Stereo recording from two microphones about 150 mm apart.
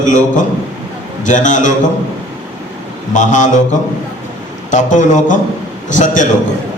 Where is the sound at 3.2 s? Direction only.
55° left (ahead or behind).